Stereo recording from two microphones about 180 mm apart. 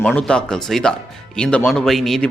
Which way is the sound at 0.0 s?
5° left (ahead or behind).